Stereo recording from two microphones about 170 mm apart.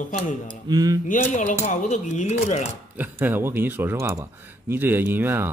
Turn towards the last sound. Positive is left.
turn(degrees=-15)  # may be behind; listen again after turning